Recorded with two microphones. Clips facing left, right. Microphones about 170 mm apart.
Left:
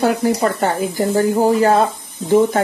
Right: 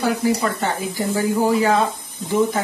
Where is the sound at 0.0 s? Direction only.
50° left (ahead or behind).